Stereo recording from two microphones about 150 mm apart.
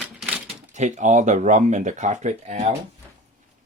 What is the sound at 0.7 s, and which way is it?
Speech, 55° right (ahead or behind).